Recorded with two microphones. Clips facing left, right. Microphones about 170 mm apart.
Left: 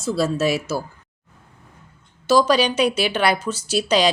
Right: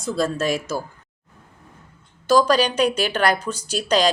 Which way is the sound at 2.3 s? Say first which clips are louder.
Even; 5° left (ahead or behind).